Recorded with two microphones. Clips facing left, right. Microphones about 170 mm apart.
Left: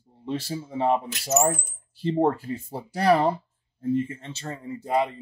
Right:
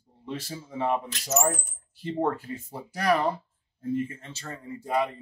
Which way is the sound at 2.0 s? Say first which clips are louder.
Left 5 dB; 30° left (ahead or behind).